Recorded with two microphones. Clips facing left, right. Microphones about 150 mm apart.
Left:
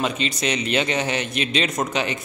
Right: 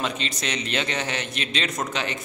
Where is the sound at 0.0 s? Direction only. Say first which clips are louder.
Left 5 dB; 10° left (ahead or behind).